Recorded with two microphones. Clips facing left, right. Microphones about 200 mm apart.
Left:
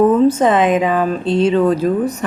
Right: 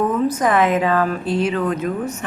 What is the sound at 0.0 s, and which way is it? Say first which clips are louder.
A woman's voice: left 7 dB; 30° left (ahead or behind).